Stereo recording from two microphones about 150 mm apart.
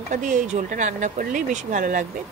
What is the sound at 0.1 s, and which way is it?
Speech, 55° right (ahead or behind).